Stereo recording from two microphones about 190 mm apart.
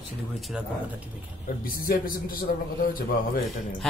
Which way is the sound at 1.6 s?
50° left (ahead or behind).